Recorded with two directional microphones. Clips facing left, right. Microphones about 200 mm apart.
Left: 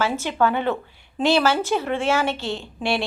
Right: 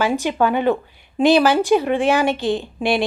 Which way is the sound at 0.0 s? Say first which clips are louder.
Right 3 dB; 15° right (ahead or behind).